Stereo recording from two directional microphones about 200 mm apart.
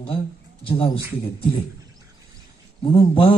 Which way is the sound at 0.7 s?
25° left (ahead or behind).